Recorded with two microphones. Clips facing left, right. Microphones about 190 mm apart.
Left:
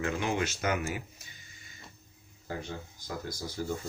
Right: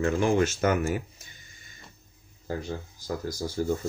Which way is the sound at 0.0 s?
45° right (ahead or behind).